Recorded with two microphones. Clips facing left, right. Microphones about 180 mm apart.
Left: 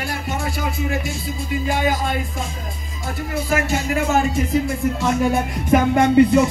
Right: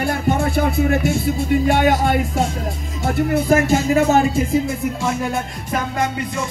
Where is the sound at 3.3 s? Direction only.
55° right (ahead or behind).